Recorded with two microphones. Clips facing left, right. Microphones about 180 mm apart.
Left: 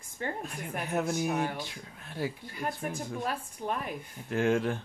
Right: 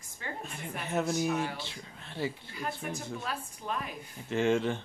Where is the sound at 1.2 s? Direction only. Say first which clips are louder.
Left 1 dB; 55° left (ahead or behind).